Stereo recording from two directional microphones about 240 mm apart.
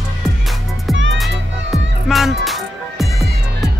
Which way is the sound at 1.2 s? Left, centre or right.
Centre.